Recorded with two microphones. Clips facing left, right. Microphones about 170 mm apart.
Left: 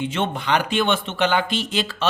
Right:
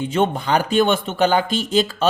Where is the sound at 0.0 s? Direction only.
40° right (ahead or behind).